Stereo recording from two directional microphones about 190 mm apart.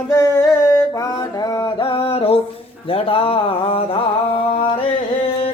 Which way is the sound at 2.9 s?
30° left (ahead or behind).